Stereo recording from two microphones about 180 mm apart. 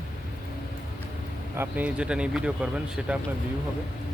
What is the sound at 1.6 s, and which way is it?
Speech, 10° right (ahead or behind).